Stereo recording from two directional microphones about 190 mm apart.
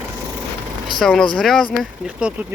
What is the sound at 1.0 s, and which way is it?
Speech, 5° left (ahead or behind).